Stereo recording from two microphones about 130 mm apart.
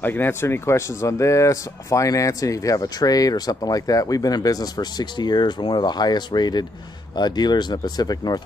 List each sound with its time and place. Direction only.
0.0 s speech: 15° left (ahead or behind); by 8.4 s 30° left (ahead or behind)